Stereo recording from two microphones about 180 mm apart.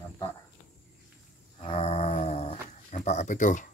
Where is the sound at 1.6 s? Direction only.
35° left (ahead or behind).